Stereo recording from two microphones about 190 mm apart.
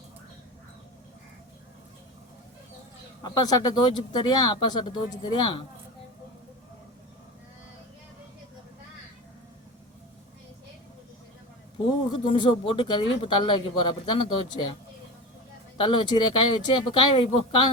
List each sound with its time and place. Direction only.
3.2 s speech: 20° left (ahead or behind)
12.2 s speech: 25° left (ahead or behind)
15.8 s speech: 25° left (ahead or behind)